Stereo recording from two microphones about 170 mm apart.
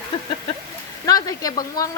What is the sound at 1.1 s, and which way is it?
Speech, 20° left (ahead or behind).